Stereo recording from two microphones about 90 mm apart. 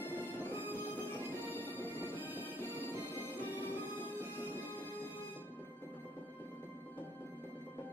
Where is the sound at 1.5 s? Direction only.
20° right (ahead or behind).